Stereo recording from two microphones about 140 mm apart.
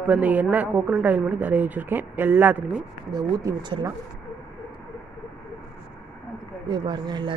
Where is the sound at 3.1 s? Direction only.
30° right (ahead or behind).